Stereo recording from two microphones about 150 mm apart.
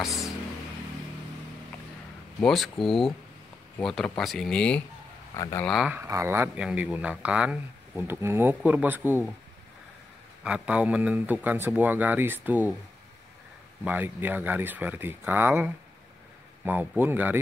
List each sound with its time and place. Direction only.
2.4 s speech: centre (ahead or behind)
5.3 s speech: 25° left (ahead or behind)
5.6 s speech: centre (ahead or behind)
5.9 s speech: 20° right (ahead or behind)
10.4 s speech: 10° right (ahead or behind)
13.8 s speech: 10° right (ahead or behind)